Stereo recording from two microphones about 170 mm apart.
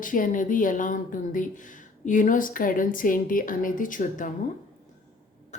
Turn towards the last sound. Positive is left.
turn(degrees=50)  # may be behind; listen again after turning